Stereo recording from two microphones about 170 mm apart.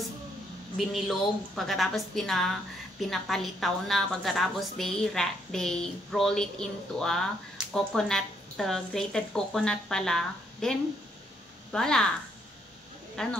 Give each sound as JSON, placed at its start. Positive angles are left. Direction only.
{"t": 0.7, "sound": "a woman's voice", "side_deg": 0}
{"t": 13.1, "sound": "speech", "side_deg": 5}